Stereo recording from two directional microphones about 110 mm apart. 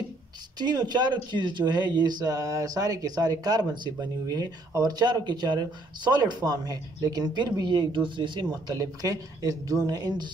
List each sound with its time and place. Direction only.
0.6 s speech: 40° right (ahead or behind)